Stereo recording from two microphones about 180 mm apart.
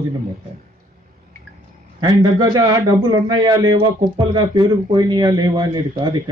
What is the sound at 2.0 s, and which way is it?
Speech, 20° right (ahead or behind).